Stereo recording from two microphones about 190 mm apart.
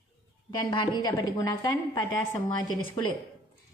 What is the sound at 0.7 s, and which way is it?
A woman's voice, 25° left (ahead or behind).